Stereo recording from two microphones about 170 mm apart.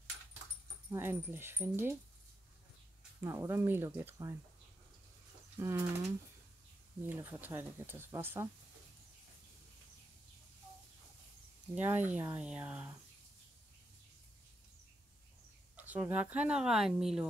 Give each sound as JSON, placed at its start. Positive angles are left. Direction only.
{"t": 0.9, "sound": "fowl", "side_deg": -15}
{"t": 3.2, "sound": "fowl", "side_deg": -15}
{"t": 5.6, "sound": "fowl", "side_deg": -15}
{"t": 7.1, "sound": "fowl", "side_deg": -15}
{"t": 11.7, "sound": "fowl", "side_deg": -10}
{"t": 15.7, "sound": "fowl", "side_deg": -10}